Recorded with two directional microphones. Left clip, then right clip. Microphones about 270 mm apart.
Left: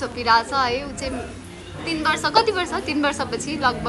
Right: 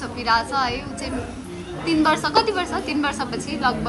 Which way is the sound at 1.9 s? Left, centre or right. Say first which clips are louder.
Right 2 dB; centre.